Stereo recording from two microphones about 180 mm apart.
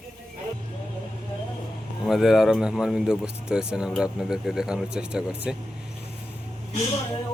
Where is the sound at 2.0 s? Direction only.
Centre (ahead or behind).